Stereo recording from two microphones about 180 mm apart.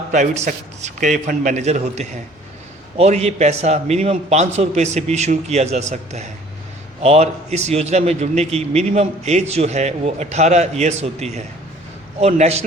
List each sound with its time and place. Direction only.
0.1 s a man's voice: 40° right (ahead or behind)